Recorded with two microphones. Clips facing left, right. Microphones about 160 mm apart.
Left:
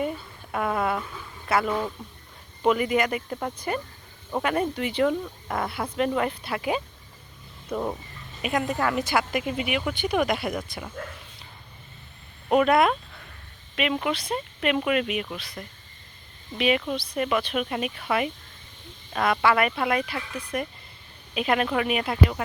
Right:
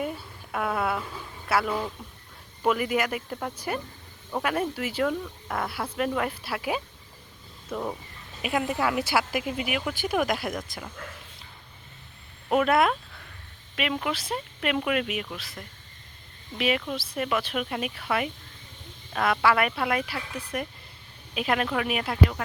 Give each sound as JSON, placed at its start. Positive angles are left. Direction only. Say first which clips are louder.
{"t": 0.5, "sound": "a woman's voice", "louder": "left 2 dB", "side_deg": 0}
{"t": 7.7, "sound": "speech", "louder": "left 3 dB", "side_deg": 10}
{"t": 8.4, "sound": "a woman's voice", "louder": "left 1 dB", "side_deg": -5}
{"t": 12.5, "sound": "a woman's voice", "louder": "left 2 dB", "side_deg": 0}